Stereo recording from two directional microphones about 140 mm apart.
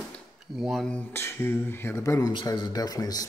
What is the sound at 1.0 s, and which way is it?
Speech, 15° left (ahead or behind).